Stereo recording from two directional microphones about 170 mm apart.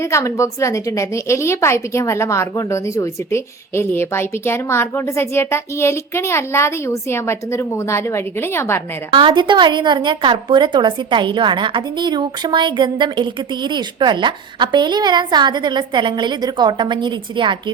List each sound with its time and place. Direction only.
0.0 s a woman's voice: 15° left (ahead or behind)
9.1 s a woman's voice: 25° right (ahead or behind)